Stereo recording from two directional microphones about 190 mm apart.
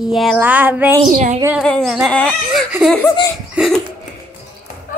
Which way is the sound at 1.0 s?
40° right (ahead or behind).